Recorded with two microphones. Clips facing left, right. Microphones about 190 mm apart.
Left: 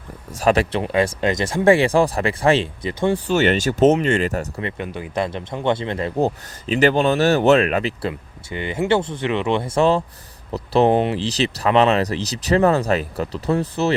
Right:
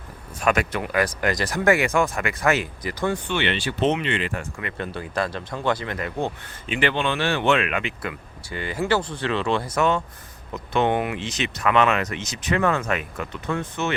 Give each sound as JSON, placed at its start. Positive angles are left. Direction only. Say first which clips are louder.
{"t": 0.3, "sound": "speech", "louder": "left 5 dB", "side_deg": 30}
{"t": 3.3, "sound": "speech", "louder": "left 7 dB", "side_deg": 45}
{"t": 4.8, "sound": "speech", "louder": "left 1 dB", "side_deg": 15}